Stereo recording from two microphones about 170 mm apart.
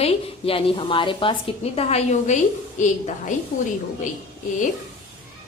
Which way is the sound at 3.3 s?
45° left (ahead or behind).